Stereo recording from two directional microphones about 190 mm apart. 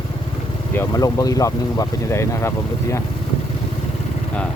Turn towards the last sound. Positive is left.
turn(degrees=15)  # may be behind; listen again after turning